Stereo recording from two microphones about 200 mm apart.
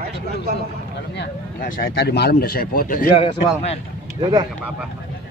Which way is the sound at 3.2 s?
30° left (ahead or behind).